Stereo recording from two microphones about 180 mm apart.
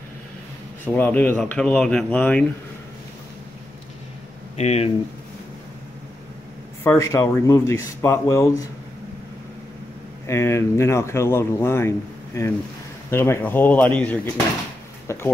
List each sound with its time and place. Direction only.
0.8 s speech: 10° left (ahead or behind)
4.6 s speech: 35° left (ahead or behind)
6.8 s speech: 15° left (ahead or behind)
10.2 s speech: 15° left (ahead or behind)
13.1 s speech: 15° left (ahead or behind)